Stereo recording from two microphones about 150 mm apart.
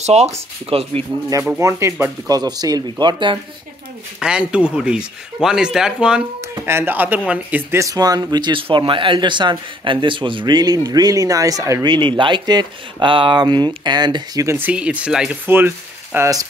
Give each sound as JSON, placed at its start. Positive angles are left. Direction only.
{"t": 0.0, "sound": "speech", "side_deg": -45}
{"t": 1.6, "sound": "speech", "side_deg": -20}
{"t": 4.2, "sound": "speech", "side_deg": -5}
{"t": 11.9, "sound": "speech", "side_deg": -35}